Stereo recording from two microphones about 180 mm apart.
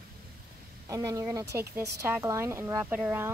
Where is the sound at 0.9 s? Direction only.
20° right (ahead or behind).